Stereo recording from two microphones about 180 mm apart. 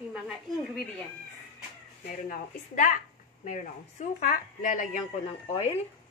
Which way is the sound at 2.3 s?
45° left (ahead or behind).